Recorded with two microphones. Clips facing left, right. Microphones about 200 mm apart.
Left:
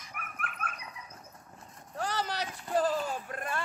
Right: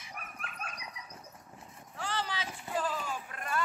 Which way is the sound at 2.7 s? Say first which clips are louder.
Left 6 dB; 40° left (ahead or behind).